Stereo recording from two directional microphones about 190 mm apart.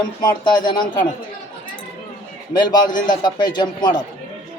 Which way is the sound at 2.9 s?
45° left (ahead or behind).